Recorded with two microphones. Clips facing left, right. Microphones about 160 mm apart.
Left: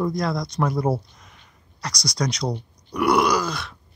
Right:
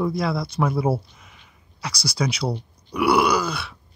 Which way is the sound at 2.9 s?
5° right (ahead or behind).